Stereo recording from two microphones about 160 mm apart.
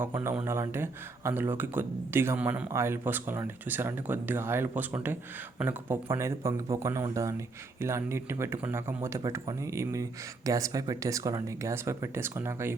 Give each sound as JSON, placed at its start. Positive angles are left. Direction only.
{"t": 0.0, "sound": "speech", "side_deg": -15}